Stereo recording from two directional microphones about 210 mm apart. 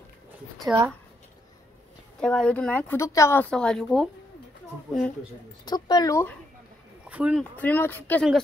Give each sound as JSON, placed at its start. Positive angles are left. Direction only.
{"t": 0.7, "sound": "speech", "side_deg": -10}
{"t": 2.1, "sound": "speech", "side_deg": 5}
{"t": 5.7, "sound": "speech", "side_deg": 20}
{"t": 7.1, "sound": "speech", "side_deg": -5}
{"t": 7.5, "sound": "speech", "side_deg": 10}